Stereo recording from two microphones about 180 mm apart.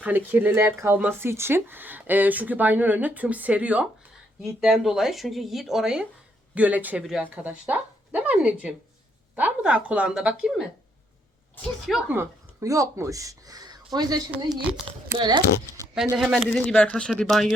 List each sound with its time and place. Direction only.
0.0 s speech: 10° right (ahead or behind)
11.9 s speech: 10° right (ahead or behind); by 15.4 s 25° right (ahead or behind)
15.7 s a sound: 15° left (ahead or behind)
16.1 s speech: 5° right (ahead or behind)